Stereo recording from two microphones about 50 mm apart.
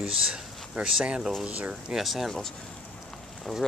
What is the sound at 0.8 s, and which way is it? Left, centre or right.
Speech, right.